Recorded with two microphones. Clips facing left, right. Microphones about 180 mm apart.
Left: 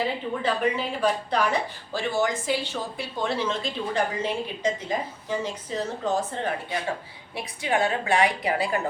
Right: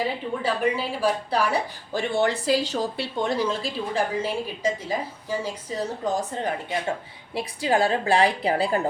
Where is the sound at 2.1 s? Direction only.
35° right (ahead or behind).